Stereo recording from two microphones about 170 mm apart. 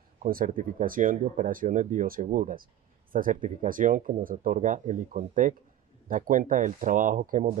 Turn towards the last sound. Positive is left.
turn(degrees=-50)  # may be behind; listen again after turning